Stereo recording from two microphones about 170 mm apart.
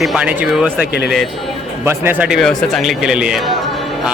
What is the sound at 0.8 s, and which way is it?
Speech, 70° left (ahead or behind).